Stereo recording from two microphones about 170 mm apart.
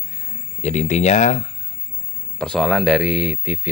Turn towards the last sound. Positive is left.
turn(degrees=-5)  # may be behind; listen again after turning